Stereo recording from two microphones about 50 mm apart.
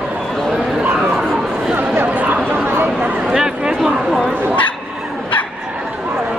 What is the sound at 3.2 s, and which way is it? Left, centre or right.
Speech, centre.